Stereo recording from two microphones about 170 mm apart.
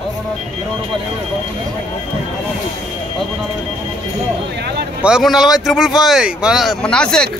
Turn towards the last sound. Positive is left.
turn(degrees=5)  # may be behind; listen again after turning